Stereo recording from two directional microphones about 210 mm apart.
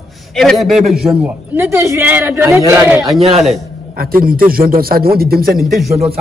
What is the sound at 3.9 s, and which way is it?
Speech, 45° right (ahead or behind).